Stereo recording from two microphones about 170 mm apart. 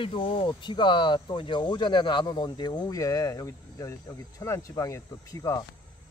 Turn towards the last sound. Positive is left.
turn(degrees=20)  # may be behind; listen again after turning